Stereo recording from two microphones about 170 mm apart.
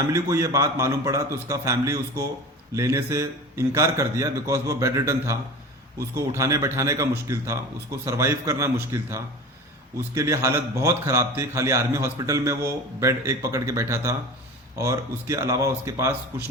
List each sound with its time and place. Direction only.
0.0 s a man's voice: 15° right (ahead or behind)